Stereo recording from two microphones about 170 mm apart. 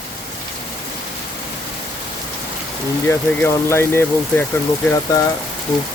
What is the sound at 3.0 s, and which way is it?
Speech, 15° left (ahead or behind).